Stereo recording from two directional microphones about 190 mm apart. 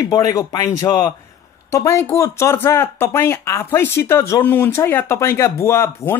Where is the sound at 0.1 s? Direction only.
20° left (ahead or behind).